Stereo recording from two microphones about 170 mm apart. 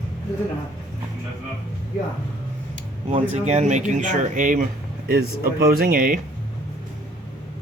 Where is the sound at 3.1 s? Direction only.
40° right (ahead or behind).